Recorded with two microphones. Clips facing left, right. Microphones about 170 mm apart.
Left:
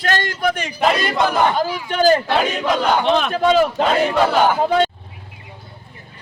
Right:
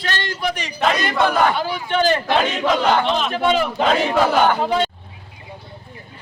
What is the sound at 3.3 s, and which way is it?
Speech, 40° left (ahead or behind).